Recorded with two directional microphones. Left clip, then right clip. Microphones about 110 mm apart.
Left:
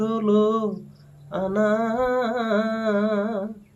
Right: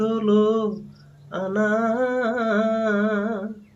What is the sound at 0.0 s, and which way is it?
Mantra, 25° left (ahead or behind).